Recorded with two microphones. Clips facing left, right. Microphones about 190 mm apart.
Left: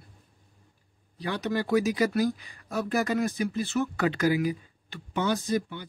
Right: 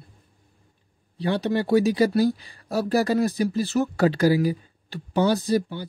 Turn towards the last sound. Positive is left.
turn(degrees=-35)  # may be behind; listen again after turning